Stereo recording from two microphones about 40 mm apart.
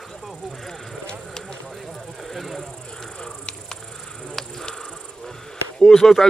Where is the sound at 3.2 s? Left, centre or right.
Centre.